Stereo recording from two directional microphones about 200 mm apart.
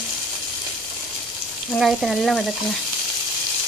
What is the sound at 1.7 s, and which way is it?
Speech, centre (ahead or behind).